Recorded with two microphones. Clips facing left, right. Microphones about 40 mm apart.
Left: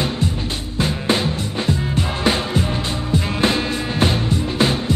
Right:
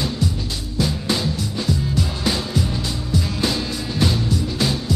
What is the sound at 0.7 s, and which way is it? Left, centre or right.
Music, left.